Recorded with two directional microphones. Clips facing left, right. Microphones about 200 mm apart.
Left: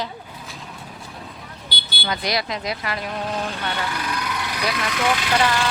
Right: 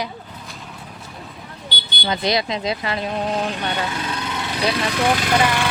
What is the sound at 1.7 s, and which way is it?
Vehicle, 10° left (ahead or behind).